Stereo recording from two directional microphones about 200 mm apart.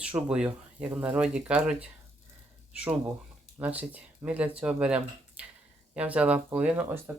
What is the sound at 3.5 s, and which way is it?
Speech, 10° right (ahead or behind).